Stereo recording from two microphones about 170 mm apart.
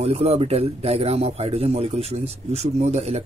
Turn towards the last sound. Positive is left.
turn(degrees=-40)  # may be behind; listen again after turning